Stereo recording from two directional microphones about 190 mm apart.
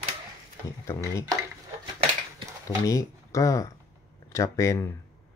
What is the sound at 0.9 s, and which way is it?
Speech, 15° left (ahead or behind).